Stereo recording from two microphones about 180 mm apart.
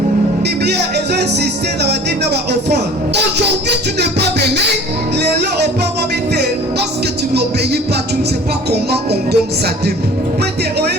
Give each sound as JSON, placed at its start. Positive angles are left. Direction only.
{"t": 0.4, "sound": "music", "side_deg": -65}
{"t": 4.0, "sound": "music", "side_deg": -65}
{"t": 8.7, "sound": "music", "side_deg": -65}